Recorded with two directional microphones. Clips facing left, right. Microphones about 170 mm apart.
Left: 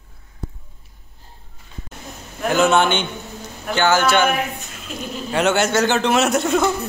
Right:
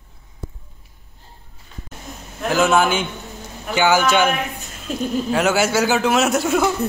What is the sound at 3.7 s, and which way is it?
Speech, 15° right (ahead or behind).